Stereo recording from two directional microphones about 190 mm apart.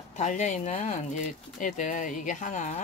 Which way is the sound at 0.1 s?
40° left (ahead or behind).